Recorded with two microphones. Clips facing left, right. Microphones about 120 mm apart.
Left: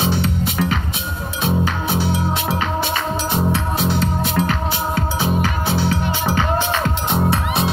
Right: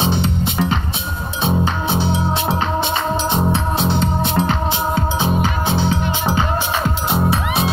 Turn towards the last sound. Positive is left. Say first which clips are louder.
# right 1 dB
turn(degrees=0)  # may be behind; listen again after turning